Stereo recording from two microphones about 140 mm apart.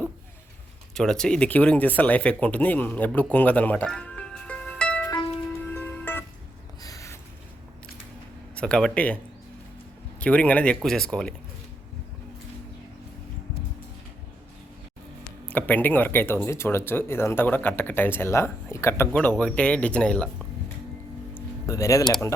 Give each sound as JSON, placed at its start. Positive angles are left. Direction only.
{"t": 0.9, "sound": "speech", "side_deg": 5}
{"t": 3.3, "sound": "music", "side_deg": 10}
{"t": 6.8, "sound": "a sound", "side_deg": 25}
{"t": 8.5, "sound": "speech", "side_deg": 5}
{"t": 10.2, "sound": "speech", "side_deg": 10}
{"t": 15.4, "sound": "speech", "side_deg": 10}
{"t": 19.4, "sound": "speech", "side_deg": 10}
{"t": 21.7, "sound": "speech", "side_deg": 20}